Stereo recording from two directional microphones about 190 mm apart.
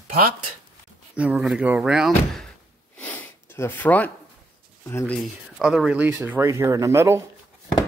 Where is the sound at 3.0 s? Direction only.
10° left (ahead or behind).